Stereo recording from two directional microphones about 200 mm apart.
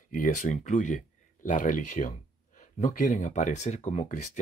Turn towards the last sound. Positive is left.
turn(degrees=40)  # may be behind; listen again after turning